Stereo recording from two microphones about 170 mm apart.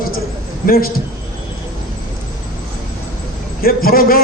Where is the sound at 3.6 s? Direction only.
60° left (ahead or behind).